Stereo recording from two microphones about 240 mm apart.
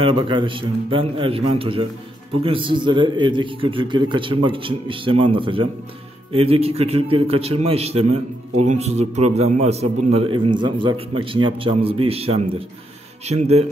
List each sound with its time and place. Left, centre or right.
0.0 s a man's voice: right